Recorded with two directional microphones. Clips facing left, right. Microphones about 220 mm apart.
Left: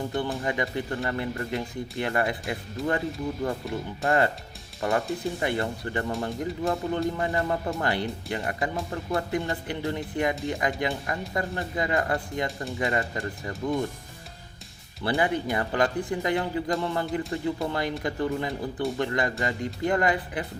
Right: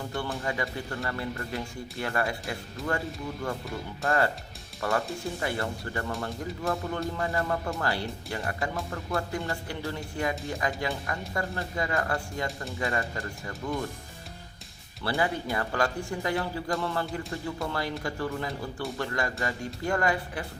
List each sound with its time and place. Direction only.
0.4 s speech: 20° left (ahead or behind)
2.8 s speech: centre (ahead or behind)
3.4 s speech: 20° left (ahead or behind)
15.0 s speech: 20° left (ahead or behind)